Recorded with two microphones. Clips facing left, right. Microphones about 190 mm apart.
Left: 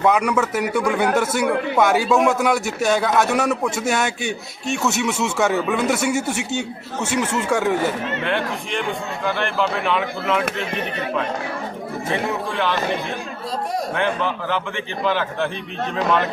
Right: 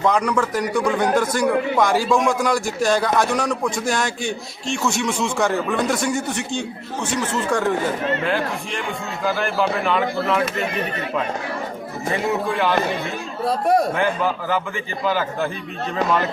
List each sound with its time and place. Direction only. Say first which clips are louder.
0.0 s a man's voice: left 1 dB; 10° left (ahead or behind)
13.4 s speech: right 9 dB; 60° right (ahead or behind)
13.9 s a man's voice: right 1 dB; 5° right (ahead or behind)